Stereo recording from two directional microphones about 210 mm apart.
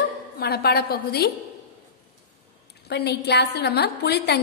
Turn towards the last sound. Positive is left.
turn(degrees=50)  # may be behind; listen again after turning